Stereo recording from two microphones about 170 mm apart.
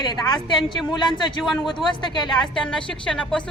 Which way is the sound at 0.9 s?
30° left (ahead or behind).